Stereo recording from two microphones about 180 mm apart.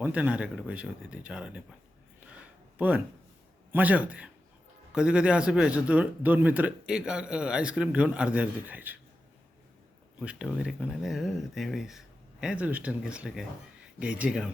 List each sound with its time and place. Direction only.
0.0 s speech: 10° right (ahead or behind)
2.7 s a man's voice: 10° right (ahead or behind)
10.2 s a man's voice: 5° right (ahead or behind)